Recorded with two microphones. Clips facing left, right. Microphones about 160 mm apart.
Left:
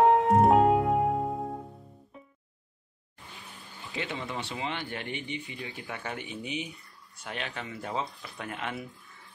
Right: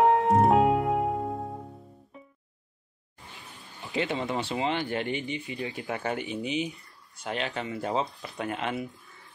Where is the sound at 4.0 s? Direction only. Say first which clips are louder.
Right 6 dB; 35° right (ahead or behind).